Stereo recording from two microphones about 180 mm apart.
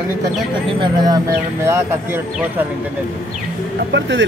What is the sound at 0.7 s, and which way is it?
A man's voice, 20° right (ahead or behind).